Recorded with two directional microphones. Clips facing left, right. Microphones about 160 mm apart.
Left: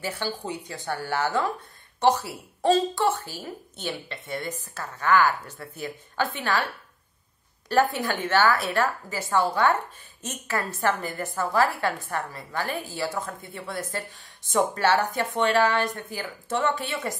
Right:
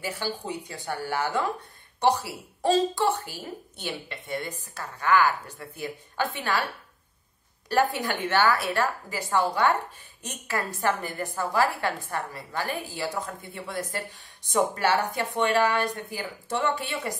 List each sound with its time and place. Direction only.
0.0 s a woman's voice: 15° right (ahead or behind)
7.6 s a woman's voice: 15° right (ahead or behind)